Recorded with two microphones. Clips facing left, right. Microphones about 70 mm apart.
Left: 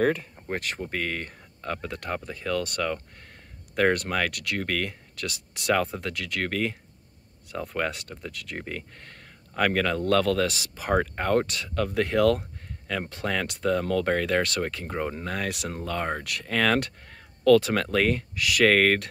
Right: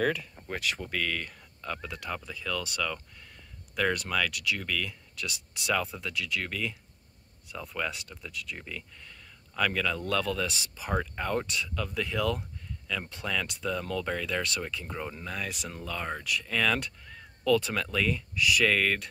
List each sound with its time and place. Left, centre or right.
0.0 s speech: left